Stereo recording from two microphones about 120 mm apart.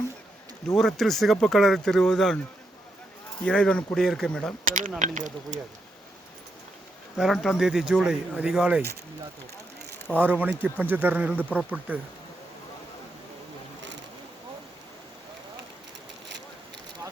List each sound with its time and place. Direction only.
0.8 s speech: centre (ahead or behind)
3.4 s speech: 10° left (ahead or behind)
4.6 s speech: 90° right
7.4 s speech: 5° right (ahead or behind)
10.2 s speech: 15° right (ahead or behind)